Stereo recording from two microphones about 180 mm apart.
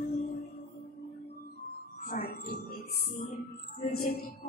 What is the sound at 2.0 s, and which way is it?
Music, 55° left (ahead or behind).